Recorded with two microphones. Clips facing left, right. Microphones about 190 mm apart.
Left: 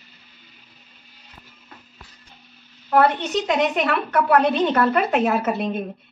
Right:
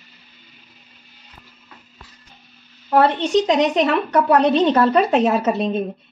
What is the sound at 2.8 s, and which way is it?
A woman's voice, 25° right (ahead or behind).